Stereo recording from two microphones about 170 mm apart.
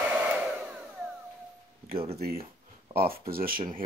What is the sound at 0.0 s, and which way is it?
Hair dryer, 10° right (ahead or behind).